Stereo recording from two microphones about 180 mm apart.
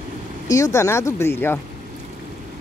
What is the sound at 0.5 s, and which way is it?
Speech, 15° left (ahead or behind).